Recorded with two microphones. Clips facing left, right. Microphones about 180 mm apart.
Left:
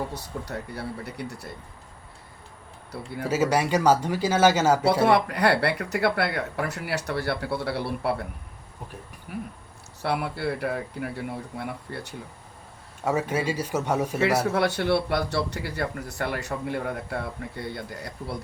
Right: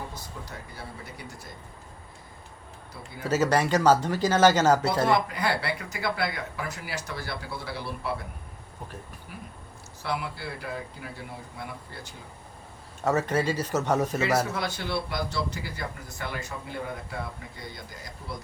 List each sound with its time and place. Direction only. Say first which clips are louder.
0.1 s speech: left 7 dB; 70° left (ahead or behind)
3.2 s speech: even; 10° left (ahead or behind)
5.1 s speech: left 4 dB; 70° left (ahead or behind)
9.3 s speech: left 12 dB; 60° left (ahead or behind)
13.1 s speech: even; 10° left (ahead or behind)
14.5 s speech: left 8 dB; 65° left (ahead or behind)